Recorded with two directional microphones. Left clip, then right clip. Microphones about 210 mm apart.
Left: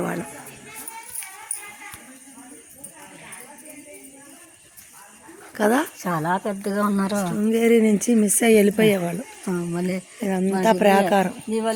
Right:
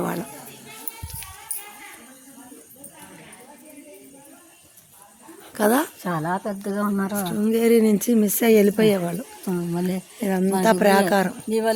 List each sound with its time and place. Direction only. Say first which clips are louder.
0.0 s speech: even; centre (ahead or behind)
5.5 s speech: even; centre (ahead or behind)
6.2 s speech: left 3 dB; 10° left (ahead or behind)
6.5 s a woman's voice: left 2 dB; 25° left (ahead or behind); by 7.3 s 45° left (ahead or behind)
7.3 s speech: even; centre (ahead or behind)
9.5 s speech: even; 20° right (ahead or behind)
10.2 s speech: right 1 dB; 5° right (ahead or behind)